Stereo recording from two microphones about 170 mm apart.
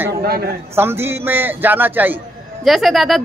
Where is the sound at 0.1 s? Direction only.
65° right (ahead or behind).